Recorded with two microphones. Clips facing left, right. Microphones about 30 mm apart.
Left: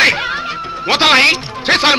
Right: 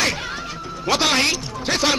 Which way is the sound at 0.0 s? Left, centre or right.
Left.